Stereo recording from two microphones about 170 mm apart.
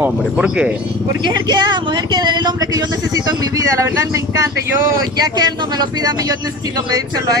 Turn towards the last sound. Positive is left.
turn(degrees=-20)  # may be behind; listen again after turning